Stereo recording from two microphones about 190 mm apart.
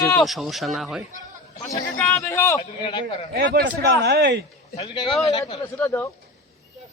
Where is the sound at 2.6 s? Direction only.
25° left (ahead or behind).